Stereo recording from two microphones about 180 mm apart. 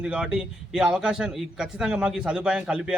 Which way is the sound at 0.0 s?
5° right (ahead or behind).